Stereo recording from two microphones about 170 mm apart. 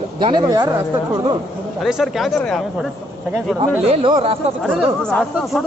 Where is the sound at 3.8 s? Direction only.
35° right (ahead or behind).